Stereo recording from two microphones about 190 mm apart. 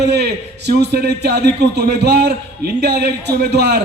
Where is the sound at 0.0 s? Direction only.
60° right (ahead or behind).